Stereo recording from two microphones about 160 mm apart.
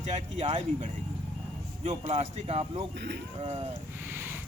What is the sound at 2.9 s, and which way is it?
Speech, 90° right.